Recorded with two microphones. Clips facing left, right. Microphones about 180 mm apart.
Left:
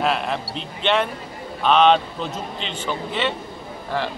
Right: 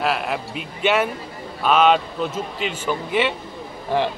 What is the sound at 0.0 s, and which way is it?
A man's voice, 5° right (ahead or behind).